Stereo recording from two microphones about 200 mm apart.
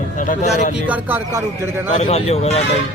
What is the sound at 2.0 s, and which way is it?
Speech, 30° left (ahead or behind).